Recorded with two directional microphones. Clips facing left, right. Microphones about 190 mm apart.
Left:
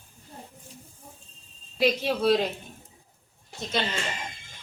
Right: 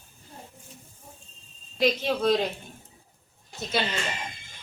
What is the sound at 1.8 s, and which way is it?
Speech, 5° left (ahead or behind).